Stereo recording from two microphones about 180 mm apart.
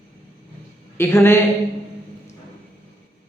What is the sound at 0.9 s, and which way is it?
Speech, 15° left (ahead or behind).